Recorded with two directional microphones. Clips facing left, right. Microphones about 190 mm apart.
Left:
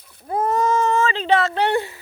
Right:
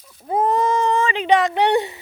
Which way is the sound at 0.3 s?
20° right (ahead or behind).